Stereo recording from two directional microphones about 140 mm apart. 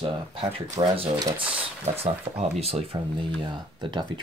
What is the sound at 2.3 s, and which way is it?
Speech, 40° right (ahead or behind).